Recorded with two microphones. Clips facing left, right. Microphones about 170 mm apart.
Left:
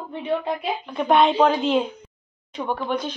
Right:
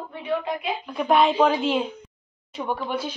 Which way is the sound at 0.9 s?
Centre (ahead or behind).